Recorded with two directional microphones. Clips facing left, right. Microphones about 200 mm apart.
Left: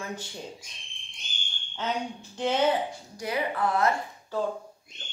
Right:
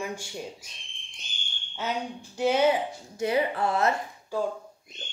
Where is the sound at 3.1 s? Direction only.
25° right (ahead or behind).